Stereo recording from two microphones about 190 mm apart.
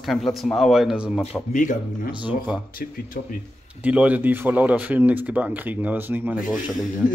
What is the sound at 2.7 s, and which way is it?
Speech, 50° left (ahead or behind).